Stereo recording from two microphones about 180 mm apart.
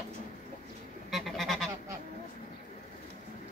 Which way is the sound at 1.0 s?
Centre (ahead or behind).